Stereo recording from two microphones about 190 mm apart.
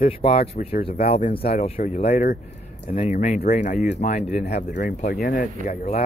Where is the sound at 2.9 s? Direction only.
40° left (ahead or behind).